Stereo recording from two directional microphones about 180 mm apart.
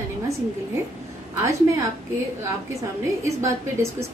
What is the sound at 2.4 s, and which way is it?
A woman's voice, 15° right (ahead or behind).